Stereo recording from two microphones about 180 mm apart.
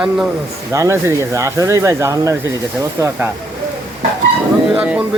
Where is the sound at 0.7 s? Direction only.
15° right (ahead or behind).